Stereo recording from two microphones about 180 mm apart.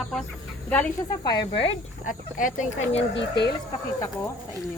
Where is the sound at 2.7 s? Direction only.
90° left.